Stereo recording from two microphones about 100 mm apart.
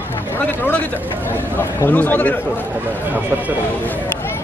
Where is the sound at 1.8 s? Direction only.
15° left (ahead or behind).